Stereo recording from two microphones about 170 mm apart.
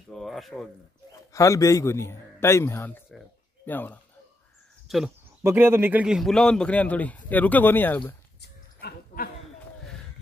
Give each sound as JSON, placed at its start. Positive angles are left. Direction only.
{"t": 0.1, "sound": "speech", "side_deg": 0}
{"t": 1.3, "sound": "a man's voice", "side_deg": 20}
{"t": 4.8, "sound": "a sound", "side_deg": 0}
{"t": 5.4, "sound": "a man's voice", "side_deg": -15}
{"t": 8.4, "sound": "dog", "side_deg": 65}